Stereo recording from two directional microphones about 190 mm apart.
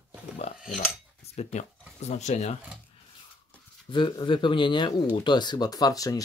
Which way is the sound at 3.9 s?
25° left (ahead or behind).